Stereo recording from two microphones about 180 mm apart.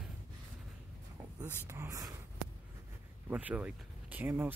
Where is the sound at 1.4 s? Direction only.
10° right (ahead or behind).